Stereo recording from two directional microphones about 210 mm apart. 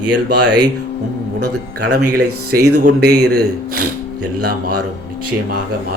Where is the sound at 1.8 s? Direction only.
45° right (ahead or behind).